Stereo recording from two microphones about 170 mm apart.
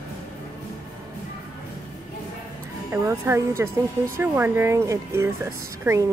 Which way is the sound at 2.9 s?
15° right (ahead or behind).